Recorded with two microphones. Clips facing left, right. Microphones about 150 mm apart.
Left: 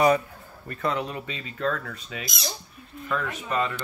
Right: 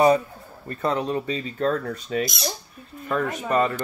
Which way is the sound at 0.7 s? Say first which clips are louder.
Right 4 dB; 35° right (ahead or behind).